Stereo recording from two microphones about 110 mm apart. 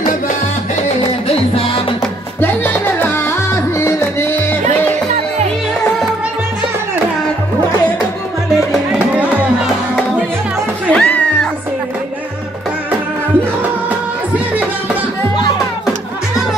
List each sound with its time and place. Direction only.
2.4 s music: 15° left (ahead or behind)
8.9 s music: 15° right (ahead or behind)
10.9 s cat: 10° left (ahead or behind)